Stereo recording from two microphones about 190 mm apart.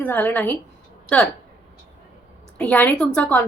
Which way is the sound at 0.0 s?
10° left (ahead or behind).